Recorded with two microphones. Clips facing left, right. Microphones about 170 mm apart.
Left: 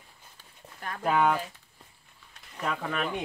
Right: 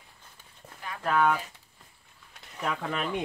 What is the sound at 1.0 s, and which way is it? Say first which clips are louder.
Speech: even; 15° left (ahead or behind).